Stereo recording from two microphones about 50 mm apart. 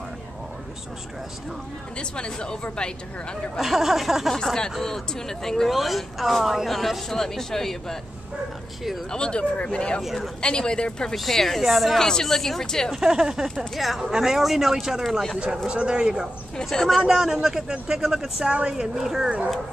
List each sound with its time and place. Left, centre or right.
2.0 s speech: centre
3.5 s speech: centre
4.3 s speech: centre
5.7 s speech: centre
9.1 s speech: centre
11.1 s speech: centre
12.9 s speech: centre
15.5 s speech: centre
16.7 s speech: centre
17.1 s speech: centre